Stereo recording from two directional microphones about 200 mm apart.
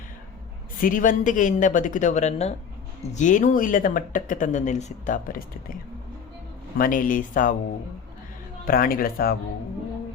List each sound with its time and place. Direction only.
0.8 s speech: 40° left (ahead or behind)
6.7 s speech: 45° left (ahead or behind)
8.6 s speech: 45° left (ahead or behind)